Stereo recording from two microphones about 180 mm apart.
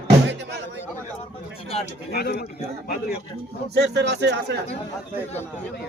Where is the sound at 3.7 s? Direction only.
70° right (ahead or behind).